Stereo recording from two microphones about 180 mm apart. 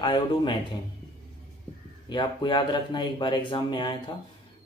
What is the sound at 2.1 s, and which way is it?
Speech, 25° left (ahead or behind).